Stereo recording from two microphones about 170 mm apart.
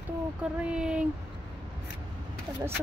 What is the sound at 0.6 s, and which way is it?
Speech, 5° right (ahead or behind).